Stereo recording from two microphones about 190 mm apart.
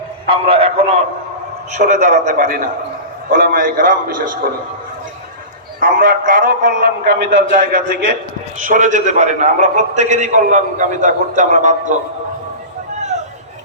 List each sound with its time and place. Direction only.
0.3 s a man's voice: 30° right (ahead or behind)
1.7 s a man's voice: 40° right (ahead or behind)
5.8 s a man's voice: 45° right (ahead or behind)